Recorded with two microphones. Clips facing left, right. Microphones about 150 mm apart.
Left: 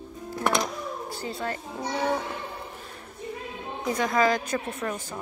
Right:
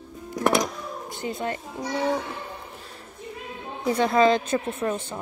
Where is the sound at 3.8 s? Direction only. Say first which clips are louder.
Right 4 dB; 30° right (ahead or behind).